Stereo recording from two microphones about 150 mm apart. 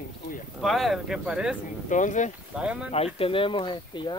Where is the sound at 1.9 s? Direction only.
55° left (ahead or behind).